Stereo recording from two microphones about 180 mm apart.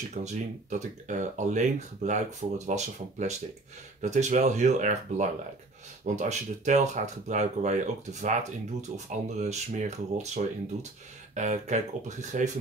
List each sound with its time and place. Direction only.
0.1 s speech: 40° right (ahead or behind)